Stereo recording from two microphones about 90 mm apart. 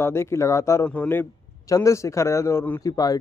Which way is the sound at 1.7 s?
35° left (ahead or behind).